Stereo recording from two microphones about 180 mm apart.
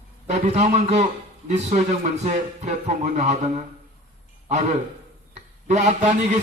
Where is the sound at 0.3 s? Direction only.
40° right (ahead or behind).